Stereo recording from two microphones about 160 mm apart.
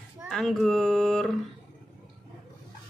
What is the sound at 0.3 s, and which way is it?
Speech, centre (ahead or behind).